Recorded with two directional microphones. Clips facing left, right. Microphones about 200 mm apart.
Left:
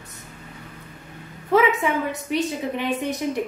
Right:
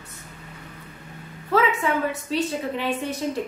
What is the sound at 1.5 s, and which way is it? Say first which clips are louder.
A woman's voice: left 2 dB; 15° left (ahead or behind).